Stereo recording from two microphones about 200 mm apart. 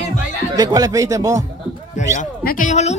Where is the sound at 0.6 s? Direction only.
20° right (ahead or behind).